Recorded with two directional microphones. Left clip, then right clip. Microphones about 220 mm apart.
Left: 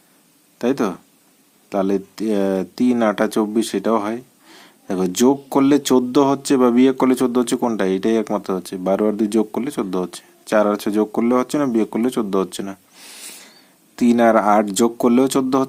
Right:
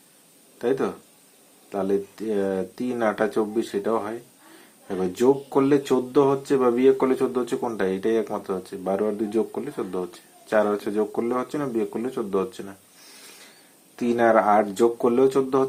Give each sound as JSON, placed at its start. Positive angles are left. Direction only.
{"t": 0.6, "sound": "speech", "side_deg": 35}
{"t": 13.9, "sound": "speech", "side_deg": 40}